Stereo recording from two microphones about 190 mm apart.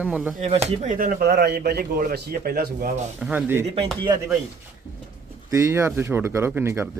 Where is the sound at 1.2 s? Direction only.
60° right (ahead or behind).